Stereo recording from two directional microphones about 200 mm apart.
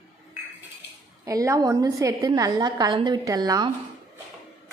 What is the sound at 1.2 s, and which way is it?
A woman's voice, 15° right (ahead or behind).